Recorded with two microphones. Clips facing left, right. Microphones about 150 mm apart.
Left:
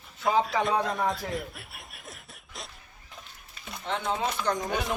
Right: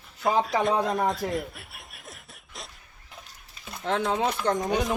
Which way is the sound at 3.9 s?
65° right (ahead or behind).